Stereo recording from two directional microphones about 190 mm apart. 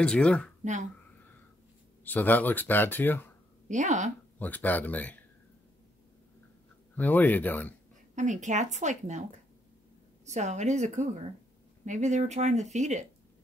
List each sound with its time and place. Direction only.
0.0 s speech: 5° left (ahead or behind)
2.0 s speech: 10° left (ahead or behind)
3.6 s a woman's voice: 40° right (ahead or behind)
4.4 s speech: 10° left (ahead or behind)
7.0 s speech: 10° left (ahead or behind)
8.2 s speech: 40° right (ahead or behind)
10.2 s speech: 40° right (ahead or behind)